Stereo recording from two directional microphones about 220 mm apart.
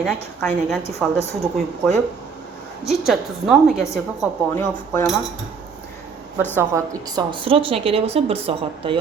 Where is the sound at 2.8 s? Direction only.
Centre (ahead or behind).